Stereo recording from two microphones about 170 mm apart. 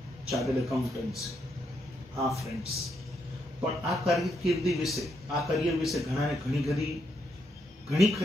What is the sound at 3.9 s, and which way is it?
A man's voice, centre (ahead or behind).